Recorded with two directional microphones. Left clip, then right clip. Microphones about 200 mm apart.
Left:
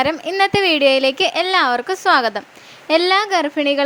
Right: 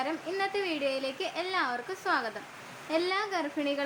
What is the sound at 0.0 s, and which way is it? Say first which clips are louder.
A woman's voice: left 15 dB; 40° left (ahead or behind).